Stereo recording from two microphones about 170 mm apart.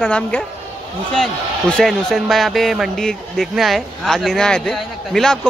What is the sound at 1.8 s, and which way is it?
A man's voice, centre (ahead or behind).